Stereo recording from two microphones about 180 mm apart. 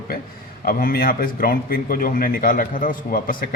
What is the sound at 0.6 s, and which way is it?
A man's voice, 55° left (ahead or behind).